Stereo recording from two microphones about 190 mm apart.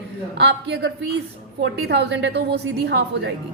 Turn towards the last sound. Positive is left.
turn(degrees=-65)  # may be behind; listen again after turning